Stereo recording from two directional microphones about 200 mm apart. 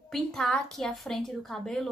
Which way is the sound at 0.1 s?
5° left (ahead or behind).